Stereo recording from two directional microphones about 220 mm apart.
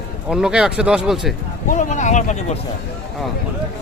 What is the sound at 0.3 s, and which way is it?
Speech, 5° right (ahead or behind).